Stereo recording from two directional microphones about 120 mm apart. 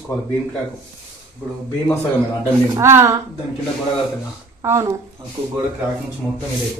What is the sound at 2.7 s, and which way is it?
Speech, 20° right (ahead or behind).